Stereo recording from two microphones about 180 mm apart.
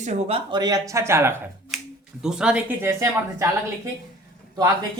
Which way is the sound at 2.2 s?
5° right (ahead or behind).